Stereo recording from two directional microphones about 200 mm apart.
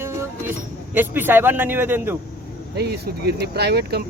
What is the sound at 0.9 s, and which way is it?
Speech, 10° right (ahead or behind).